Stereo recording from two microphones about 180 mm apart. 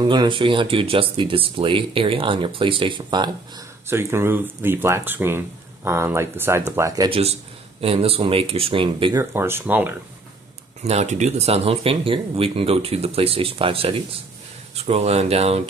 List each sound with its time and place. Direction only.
0.0 s speech: 25° right (ahead or behind)
3.8 s speech: 15° right (ahead or behind)
7.1 s speech: 35° right (ahead or behind)
9.2 s speech: 15° right (ahead or behind)
10.8 s speech: 40° right (ahead or behind)